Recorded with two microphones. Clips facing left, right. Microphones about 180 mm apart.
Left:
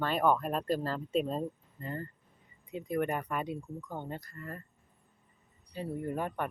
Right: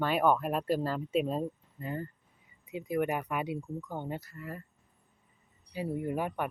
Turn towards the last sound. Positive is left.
turn(degrees=-5)  # may be behind; listen again after turning